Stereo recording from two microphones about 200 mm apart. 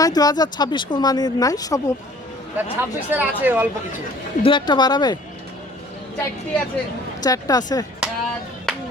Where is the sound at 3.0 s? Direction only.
10° right (ahead or behind).